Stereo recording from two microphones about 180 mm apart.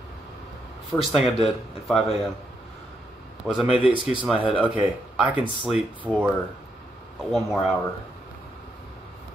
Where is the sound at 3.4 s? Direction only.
Centre (ahead or behind).